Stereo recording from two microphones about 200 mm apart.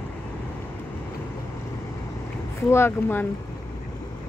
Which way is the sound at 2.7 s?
10° left (ahead or behind).